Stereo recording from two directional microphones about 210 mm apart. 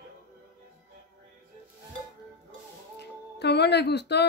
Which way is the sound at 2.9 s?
50° left (ahead or behind).